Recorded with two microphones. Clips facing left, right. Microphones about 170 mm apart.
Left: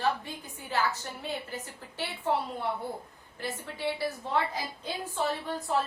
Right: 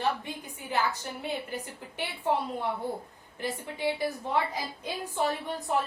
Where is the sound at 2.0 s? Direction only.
15° right (ahead or behind).